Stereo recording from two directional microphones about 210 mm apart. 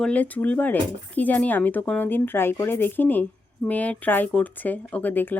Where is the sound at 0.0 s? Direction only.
5° left (ahead or behind).